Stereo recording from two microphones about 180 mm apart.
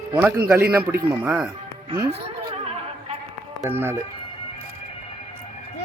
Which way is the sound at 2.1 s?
35° right (ahead or behind).